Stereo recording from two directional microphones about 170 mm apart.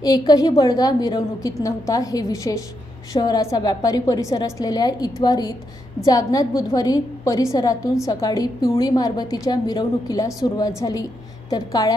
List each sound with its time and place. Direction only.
0.0 s a woman's voice: 20° left (ahead or behind)